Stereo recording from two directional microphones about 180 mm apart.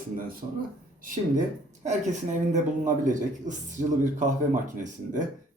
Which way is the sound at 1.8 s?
40° right (ahead or behind).